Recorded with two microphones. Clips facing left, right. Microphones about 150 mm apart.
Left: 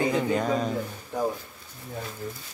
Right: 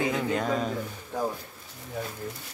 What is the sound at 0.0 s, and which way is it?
Speech, centre (ahead or behind).